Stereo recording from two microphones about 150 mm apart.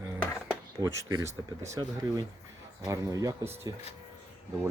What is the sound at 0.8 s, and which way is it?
Speech, 20° right (ahead or behind).